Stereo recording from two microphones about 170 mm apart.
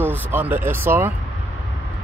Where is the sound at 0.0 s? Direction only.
10° right (ahead or behind).